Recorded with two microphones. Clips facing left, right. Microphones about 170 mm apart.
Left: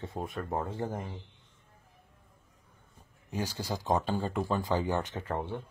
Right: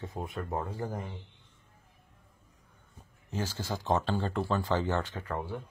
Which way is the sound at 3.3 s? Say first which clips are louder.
Even; 15° left (ahead or behind).